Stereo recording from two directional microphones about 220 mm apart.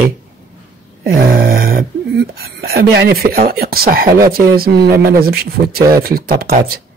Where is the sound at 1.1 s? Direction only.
40° right (ahead or behind).